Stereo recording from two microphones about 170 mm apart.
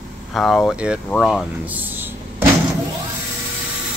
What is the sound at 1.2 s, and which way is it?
Vehicle, centre (ahead or behind).